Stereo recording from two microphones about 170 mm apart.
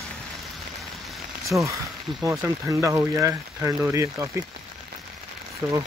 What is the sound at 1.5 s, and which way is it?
Speech, 20° right (ahead or behind).